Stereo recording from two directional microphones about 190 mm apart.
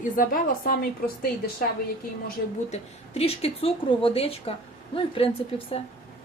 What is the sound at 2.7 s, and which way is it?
A woman's voice, 30° left (ahead or behind).